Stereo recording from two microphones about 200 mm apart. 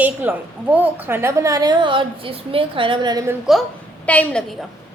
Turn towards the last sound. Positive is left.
turn(degrees=5)  # may be behind; listen again after turning